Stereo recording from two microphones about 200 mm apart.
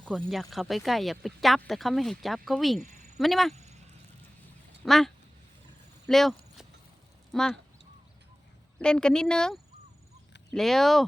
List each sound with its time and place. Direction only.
0.0 s speech: 5° left (ahead or behind)
2.8 s cricket: 40° right (ahead or behind)
3.2 s speech: centre (ahead or behind)
3.5 s a sound: 35° right (ahead or behind)
4.9 s speech: centre (ahead or behind)
6.1 s a sound: centre (ahead or behind)
7.3 s speech: 5° left (ahead or behind)
8.8 s speech: 5° left (ahead or behind)